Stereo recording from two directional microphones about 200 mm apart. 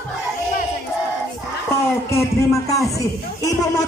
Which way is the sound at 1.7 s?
15° left (ahead or behind).